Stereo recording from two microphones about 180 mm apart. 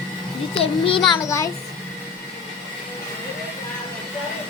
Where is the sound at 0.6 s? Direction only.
30° left (ahead or behind).